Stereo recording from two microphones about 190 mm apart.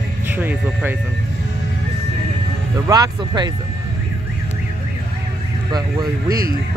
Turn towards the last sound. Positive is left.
turn(degrees=-20)  # may be behind; listen again after turning